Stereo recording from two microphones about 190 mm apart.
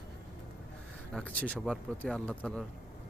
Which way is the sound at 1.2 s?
5° left (ahead or behind).